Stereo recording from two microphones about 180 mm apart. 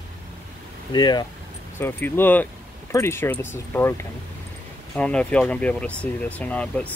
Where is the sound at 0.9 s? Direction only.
25° left (ahead or behind).